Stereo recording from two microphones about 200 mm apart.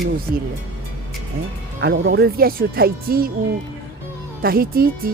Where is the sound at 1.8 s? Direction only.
55° right (ahead or behind).